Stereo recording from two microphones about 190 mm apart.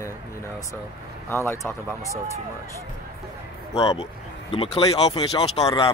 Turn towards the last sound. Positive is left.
turn(degrees=35)  # may be behind; listen again after turning